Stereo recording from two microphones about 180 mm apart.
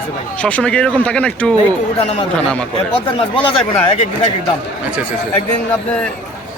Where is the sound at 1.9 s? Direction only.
35° left (ahead or behind).